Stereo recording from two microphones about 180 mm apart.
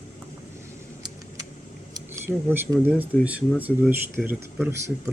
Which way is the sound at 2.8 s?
10° right (ahead or behind).